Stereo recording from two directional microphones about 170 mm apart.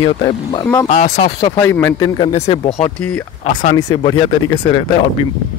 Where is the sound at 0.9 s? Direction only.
40° left (ahead or behind).